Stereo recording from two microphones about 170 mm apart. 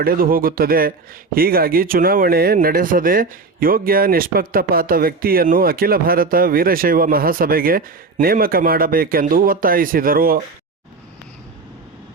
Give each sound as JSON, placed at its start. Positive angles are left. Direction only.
{"t": 0.0, "sound": "speech", "side_deg": -60}